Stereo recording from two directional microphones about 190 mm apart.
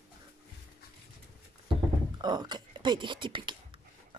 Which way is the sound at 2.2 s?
20° right (ahead or behind).